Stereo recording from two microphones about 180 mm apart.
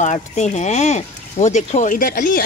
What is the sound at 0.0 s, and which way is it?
Speech, 40° left (ahead or behind).